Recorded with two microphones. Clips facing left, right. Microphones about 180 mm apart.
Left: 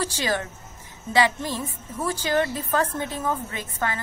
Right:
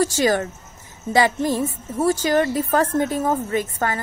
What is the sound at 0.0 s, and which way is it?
A woman's voice, 45° right (ahead or behind).